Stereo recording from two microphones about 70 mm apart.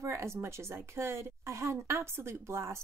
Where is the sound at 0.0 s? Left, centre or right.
Right.